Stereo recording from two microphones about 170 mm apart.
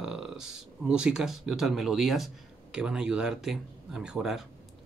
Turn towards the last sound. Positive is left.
turn(degrees=-5)  # may be behind; listen again after turning